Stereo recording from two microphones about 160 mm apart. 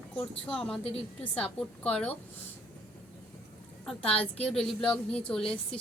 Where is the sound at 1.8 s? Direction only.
10° left (ahead or behind).